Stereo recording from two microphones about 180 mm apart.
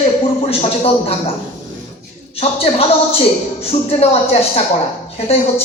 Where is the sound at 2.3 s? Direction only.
35° left (ahead or behind).